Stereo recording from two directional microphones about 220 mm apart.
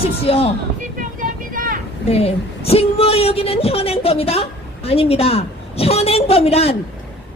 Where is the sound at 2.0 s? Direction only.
25° left (ahead or behind).